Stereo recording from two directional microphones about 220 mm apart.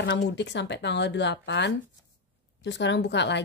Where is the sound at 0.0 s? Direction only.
55° left (ahead or behind).